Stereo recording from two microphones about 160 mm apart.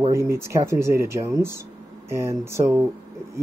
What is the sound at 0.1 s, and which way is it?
Speech, 20° right (ahead or behind).